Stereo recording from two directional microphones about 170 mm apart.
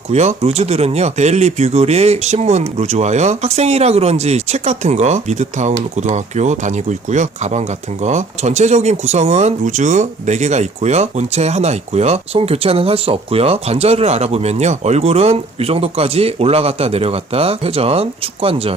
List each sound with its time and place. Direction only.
0.1 s speech: 40° right (ahead or behind)